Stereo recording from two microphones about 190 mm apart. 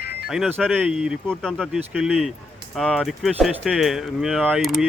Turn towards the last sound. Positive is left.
turn(degrees=0)  # may be behind; listen again after turning